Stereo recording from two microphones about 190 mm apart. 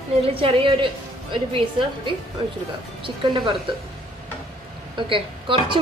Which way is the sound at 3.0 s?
25° right (ahead or behind).